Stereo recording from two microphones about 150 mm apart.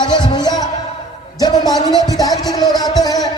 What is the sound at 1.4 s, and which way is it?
Speech, 25° left (ahead or behind).